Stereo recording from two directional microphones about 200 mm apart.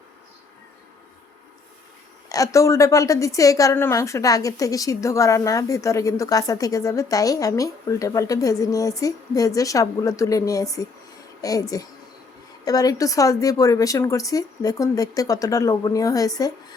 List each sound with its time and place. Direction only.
2.3 s a woman's voice: 15° left (ahead or behind)